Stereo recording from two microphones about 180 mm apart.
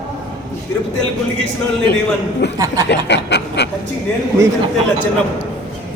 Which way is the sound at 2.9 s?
70° left (ahead or behind).